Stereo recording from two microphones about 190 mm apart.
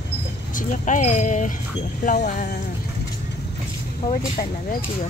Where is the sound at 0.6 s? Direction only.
40° left (ahead or behind).